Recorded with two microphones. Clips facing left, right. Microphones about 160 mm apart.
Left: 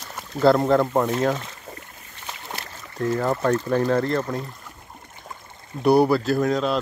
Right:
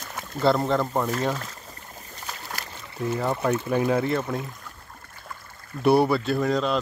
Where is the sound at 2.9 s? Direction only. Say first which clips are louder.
Left 3 dB; 10° right (ahead or behind).